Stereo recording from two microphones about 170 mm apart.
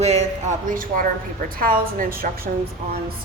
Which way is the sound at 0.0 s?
40° right (ahead or behind).